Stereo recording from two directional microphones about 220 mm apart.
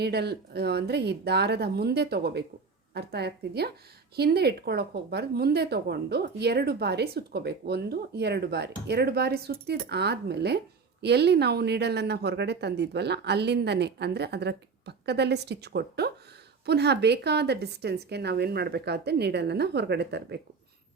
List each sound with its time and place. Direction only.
0.0 s speech: 45° right (ahead or behind)